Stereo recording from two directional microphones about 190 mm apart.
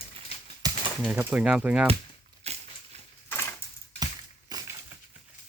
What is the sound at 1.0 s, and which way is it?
Speech, 5° right (ahead or behind).